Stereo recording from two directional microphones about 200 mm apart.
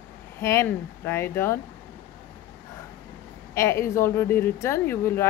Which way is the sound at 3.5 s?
15° left (ahead or behind).